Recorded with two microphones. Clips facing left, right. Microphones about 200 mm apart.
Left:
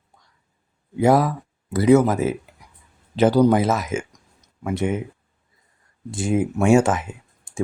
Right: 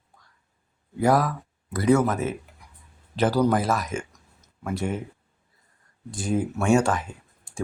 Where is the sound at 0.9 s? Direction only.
25° left (ahead or behind).